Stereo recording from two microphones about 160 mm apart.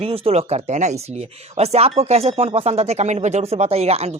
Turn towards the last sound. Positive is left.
turn(degrees=-40)  # may be behind; listen again after turning